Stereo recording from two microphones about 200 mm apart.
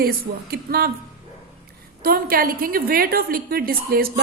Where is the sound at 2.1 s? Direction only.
45° right (ahead or behind).